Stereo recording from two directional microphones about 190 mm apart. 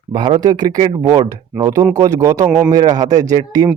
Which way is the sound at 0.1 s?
25° right (ahead or behind).